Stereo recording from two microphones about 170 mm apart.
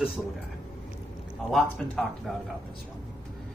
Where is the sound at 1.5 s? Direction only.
5° left (ahead or behind).